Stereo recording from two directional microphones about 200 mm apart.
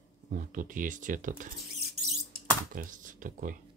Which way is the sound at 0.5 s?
40° right (ahead or behind).